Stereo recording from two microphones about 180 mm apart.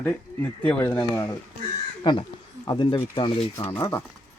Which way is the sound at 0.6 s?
5° left (ahead or behind).